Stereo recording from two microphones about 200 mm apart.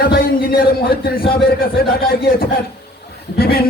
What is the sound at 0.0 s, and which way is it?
Music, 50° left (ahead or behind).